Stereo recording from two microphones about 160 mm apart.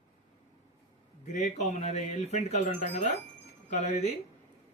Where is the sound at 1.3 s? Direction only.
50° left (ahead or behind).